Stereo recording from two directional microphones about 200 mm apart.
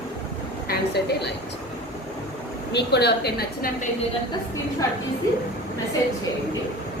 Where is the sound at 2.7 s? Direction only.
60° left (ahead or behind).